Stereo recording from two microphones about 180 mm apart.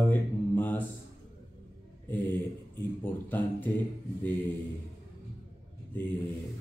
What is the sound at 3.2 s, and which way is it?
Speech, 10° left (ahead or behind).